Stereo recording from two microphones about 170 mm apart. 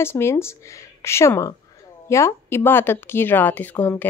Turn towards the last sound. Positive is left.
turn(degrees=10)  # may be behind; listen again after turning